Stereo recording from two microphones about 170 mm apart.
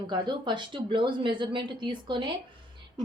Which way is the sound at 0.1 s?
25° right (ahead or behind).